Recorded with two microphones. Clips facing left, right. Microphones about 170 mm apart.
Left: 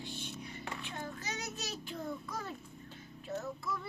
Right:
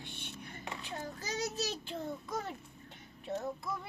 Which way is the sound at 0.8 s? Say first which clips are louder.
Even; 35° right (ahead or behind).